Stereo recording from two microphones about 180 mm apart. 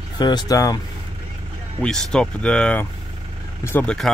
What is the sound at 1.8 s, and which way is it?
Speech, 5° left (ahead or behind).